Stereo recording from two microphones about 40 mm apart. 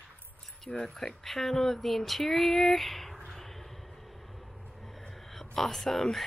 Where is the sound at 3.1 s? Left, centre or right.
Centre.